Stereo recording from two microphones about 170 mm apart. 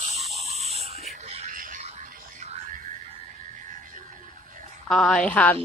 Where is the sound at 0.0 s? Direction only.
40° right (ahead or behind).